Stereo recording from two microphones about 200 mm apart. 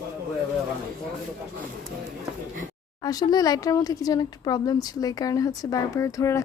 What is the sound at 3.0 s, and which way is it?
Speech, 20° left (ahead or behind).